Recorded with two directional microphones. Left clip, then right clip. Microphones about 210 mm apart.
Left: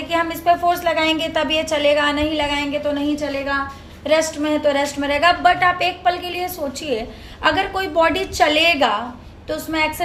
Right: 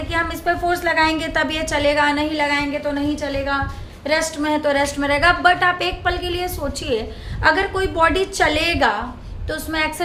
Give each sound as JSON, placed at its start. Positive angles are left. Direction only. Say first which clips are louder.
{"t": 0.1, "sound": "a woman's voice", "louder": "left 4 dB", "side_deg": -10}